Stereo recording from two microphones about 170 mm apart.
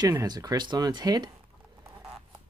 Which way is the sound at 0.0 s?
20° right (ahead or behind).